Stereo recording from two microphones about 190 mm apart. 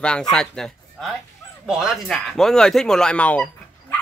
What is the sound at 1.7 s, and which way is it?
Speech, 5° right (ahead or behind).